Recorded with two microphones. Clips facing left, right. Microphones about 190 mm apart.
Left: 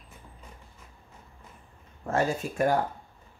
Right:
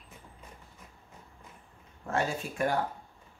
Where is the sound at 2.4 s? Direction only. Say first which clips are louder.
Left 5 dB; 40° left (ahead or behind).